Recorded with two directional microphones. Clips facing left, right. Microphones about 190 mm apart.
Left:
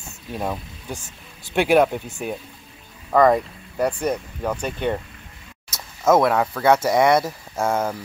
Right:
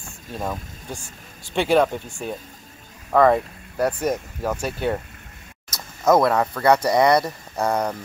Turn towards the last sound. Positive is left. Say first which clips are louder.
# even
turn(degrees=5)  # may be behind; listen again after turning